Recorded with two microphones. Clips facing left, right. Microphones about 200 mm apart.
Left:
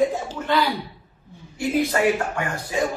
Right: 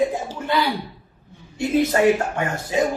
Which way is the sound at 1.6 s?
25° right (ahead or behind).